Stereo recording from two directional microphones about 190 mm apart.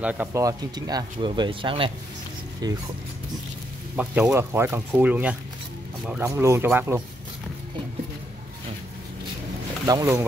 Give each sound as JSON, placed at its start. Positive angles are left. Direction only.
{"t": 0.0, "sound": "speech", "side_deg": -10}
{"t": 3.9, "sound": "speech", "side_deg": -10}
{"t": 9.8, "sound": "speech", "side_deg": -20}